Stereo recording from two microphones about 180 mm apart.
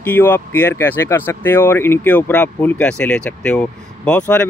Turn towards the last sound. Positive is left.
turn(degrees=10)  # may be behind; listen again after turning